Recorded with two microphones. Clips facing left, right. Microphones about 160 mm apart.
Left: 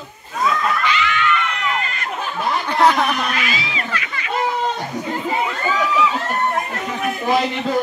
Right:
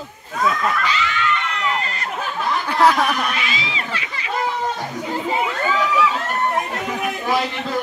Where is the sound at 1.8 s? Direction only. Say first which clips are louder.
Even; 35° right (ahead or behind).